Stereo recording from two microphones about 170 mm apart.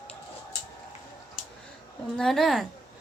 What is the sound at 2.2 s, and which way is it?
Speech, centre (ahead or behind).